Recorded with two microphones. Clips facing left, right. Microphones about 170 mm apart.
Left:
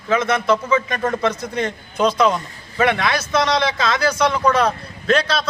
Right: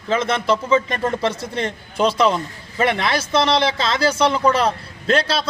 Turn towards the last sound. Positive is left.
turn(degrees=-30)  # may be behind; listen again after turning